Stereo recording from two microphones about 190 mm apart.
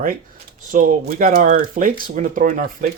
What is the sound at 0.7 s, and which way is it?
Speech, 45° right (ahead or behind).